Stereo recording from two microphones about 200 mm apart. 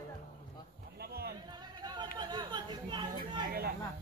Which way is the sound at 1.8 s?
20° right (ahead or behind).